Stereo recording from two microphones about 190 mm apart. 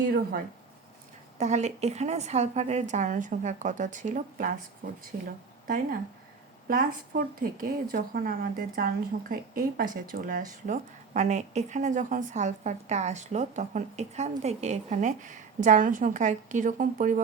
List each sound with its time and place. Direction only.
1.4 s a woman's voice: 35° right (ahead or behind)